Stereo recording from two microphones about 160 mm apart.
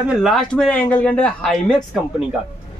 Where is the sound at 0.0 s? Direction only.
5° right (ahead or behind).